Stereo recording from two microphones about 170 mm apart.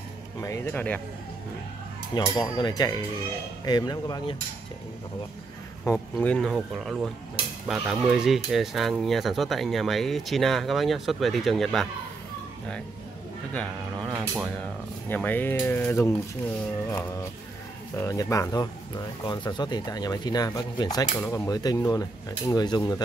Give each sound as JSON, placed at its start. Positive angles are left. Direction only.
{"t": 0.4, "sound": "speech", "side_deg": 15}
{"t": 2.1, "sound": "speech", "side_deg": 25}
{"t": 5.9, "sound": "speech", "side_deg": 10}
{"t": 15.0, "sound": "speech", "side_deg": 10}
{"t": 17.9, "sound": "speech", "side_deg": 20}